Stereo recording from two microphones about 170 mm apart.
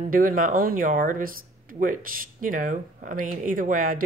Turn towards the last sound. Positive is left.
turn(degrees=-50)  # may be behind; listen again after turning